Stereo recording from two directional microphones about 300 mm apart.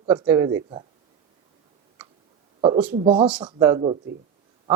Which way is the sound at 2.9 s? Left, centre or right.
Centre.